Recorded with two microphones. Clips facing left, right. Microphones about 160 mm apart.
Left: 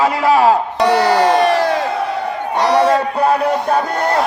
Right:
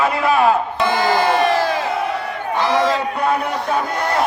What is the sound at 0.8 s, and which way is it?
Crowd, 70° left (ahead or behind).